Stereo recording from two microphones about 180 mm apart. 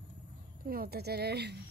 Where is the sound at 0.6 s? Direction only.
55° right (ahead or behind).